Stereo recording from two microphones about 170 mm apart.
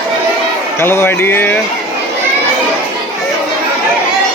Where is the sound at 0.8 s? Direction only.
15° left (ahead or behind).